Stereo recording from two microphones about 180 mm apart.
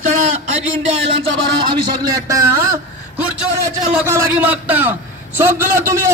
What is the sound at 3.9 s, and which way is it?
A man's voice, 15° right (ahead or behind).